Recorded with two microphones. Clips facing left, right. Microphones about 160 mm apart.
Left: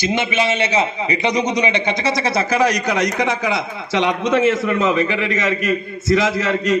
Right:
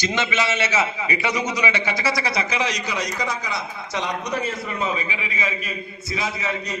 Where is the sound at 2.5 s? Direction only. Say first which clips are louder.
Left 8 dB; 60° left (ahead or behind).